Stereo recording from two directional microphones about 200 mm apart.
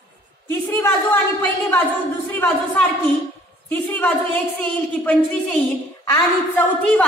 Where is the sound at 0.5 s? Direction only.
10° left (ahead or behind).